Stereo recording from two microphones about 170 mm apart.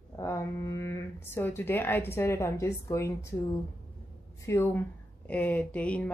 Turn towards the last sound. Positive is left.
turn(degrees=10)  # may be behind; listen again after turning